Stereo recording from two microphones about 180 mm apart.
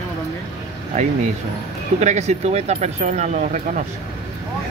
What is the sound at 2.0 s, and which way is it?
Speech, 40° right (ahead or behind).